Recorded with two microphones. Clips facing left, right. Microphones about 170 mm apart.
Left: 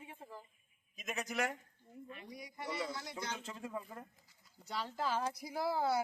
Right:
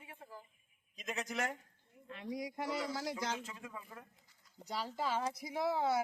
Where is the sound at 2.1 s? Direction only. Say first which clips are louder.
Right 11 dB; 90° right.